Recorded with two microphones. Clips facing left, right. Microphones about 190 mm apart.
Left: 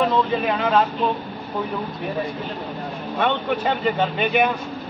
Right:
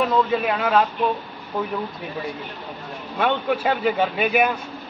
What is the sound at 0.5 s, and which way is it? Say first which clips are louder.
Speech: even; 5° right (ahead or behind).